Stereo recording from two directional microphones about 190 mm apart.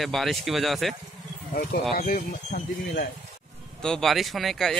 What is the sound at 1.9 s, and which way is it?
Speech, 50° left (ahead or behind).